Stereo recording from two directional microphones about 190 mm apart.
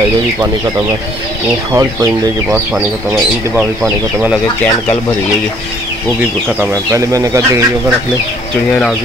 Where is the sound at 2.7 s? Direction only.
5° right (ahead or behind).